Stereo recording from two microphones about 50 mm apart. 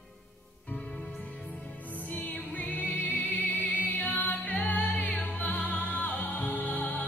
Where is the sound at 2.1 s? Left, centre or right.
Left.